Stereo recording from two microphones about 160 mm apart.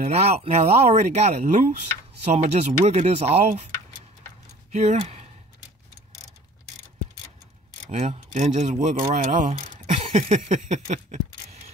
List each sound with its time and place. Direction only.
0.0 s speech: 40° right (ahead or behind)
4.7 s speech: 40° right (ahead or behind)
7.9 s speech: 45° right (ahead or behind)